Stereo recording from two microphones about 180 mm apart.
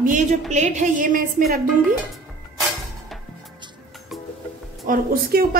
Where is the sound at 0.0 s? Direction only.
45° right (ahead or behind).